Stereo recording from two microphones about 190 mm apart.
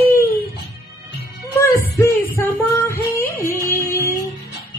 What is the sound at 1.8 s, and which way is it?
Music, 10° left (ahead or behind).